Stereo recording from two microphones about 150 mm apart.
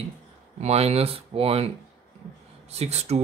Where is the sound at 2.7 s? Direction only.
45° right (ahead or behind).